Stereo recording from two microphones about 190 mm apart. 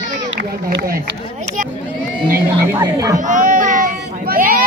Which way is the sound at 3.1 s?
40° right (ahead or behind).